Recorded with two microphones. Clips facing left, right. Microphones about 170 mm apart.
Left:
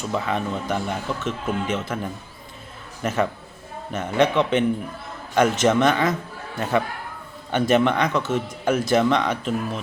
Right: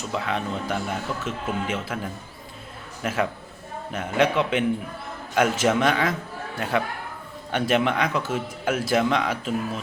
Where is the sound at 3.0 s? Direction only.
Centre (ahead or behind).